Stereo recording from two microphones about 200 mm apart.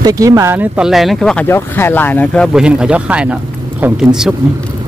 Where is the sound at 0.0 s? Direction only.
15° right (ahead or behind).